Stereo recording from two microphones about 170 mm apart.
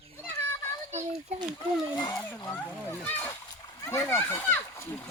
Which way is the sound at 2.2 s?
10° left (ahead or behind).